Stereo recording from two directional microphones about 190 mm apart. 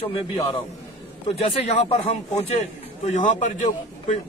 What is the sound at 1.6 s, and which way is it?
A man's voice, 35° left (ahead or behind).